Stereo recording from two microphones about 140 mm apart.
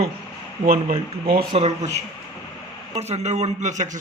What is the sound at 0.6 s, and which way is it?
Speech, 90° right.